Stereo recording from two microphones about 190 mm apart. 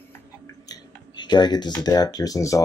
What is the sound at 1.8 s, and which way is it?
Speech, 20° left (ahead or behind).